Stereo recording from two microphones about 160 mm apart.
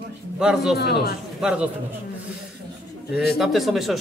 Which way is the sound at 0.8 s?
90° left.